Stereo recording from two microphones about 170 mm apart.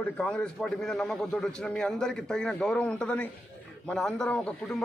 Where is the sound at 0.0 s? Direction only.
5° left (ahead or behind).